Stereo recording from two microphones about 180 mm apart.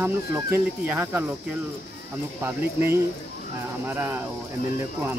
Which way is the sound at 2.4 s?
15° right (ahead or behind).